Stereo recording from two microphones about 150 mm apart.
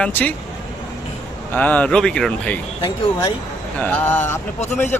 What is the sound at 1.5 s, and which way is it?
Speech, 10° left (ahead or behind).